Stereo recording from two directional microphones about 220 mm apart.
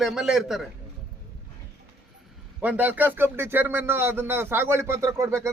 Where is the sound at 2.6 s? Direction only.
10° right (ahead or behind).